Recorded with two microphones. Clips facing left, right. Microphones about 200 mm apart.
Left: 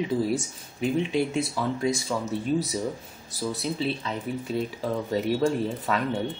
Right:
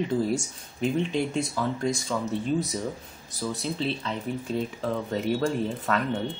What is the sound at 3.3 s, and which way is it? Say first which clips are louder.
Speech: left 1 dB; centre (ahead or behind).